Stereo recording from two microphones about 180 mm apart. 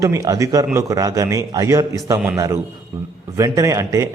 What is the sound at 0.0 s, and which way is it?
A man's voice, 20° right (ahead or behind).